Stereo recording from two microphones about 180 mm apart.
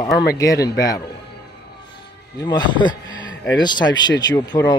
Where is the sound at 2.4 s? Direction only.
25° left (ahead or behind).